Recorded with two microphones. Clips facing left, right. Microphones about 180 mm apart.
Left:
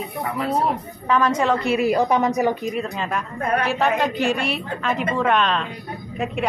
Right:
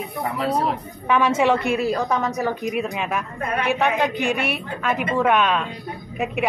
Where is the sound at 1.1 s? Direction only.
5° right (ahead or behind).